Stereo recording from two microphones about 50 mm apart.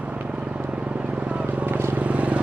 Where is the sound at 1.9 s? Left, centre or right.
Right.